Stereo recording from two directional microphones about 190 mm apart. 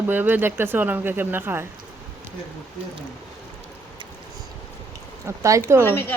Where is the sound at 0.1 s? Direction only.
10° right (ahead or behind).